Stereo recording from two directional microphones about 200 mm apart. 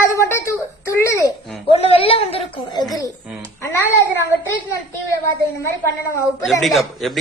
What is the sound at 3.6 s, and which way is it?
Speech, 10° left (ahead or behind).